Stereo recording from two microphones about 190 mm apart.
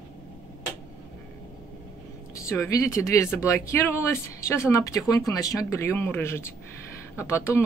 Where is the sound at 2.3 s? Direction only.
15° left (ahead or behind).